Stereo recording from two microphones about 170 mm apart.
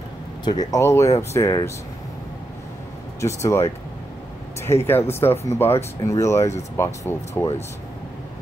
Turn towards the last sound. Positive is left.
turn(degrees=15)  # may be behind; listen again after turning